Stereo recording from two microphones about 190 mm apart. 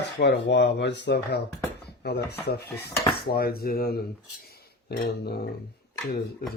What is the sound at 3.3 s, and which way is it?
Speech, 55° left (ahead or behind).